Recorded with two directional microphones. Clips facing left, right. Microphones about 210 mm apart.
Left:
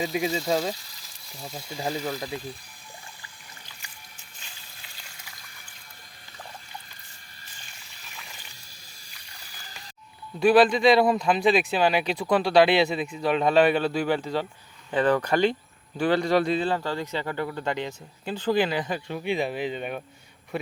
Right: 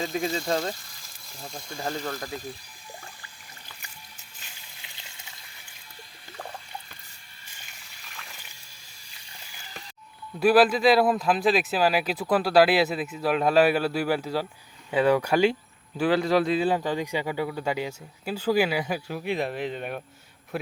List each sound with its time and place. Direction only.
0.0 s speech: 5° left (ahead or behind)
4.8 s frying: 20° right (ahead or behind)
10.4 s speech: 5° right (ahead or behind)
16.6 s speech: 15° right (ahead or behind)